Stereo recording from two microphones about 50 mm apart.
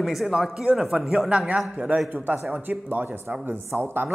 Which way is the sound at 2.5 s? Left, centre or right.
Right.